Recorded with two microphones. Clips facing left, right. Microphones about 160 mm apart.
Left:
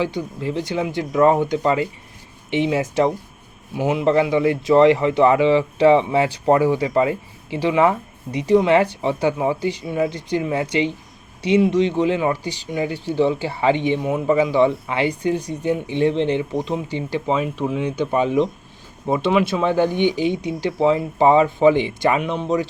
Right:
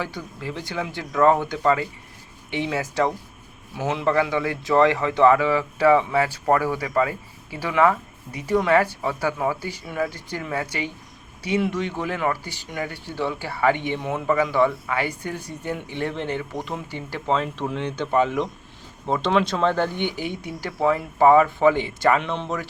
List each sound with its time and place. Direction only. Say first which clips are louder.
0.0 s speech: left 7 dB; 20° left (ahead or behind)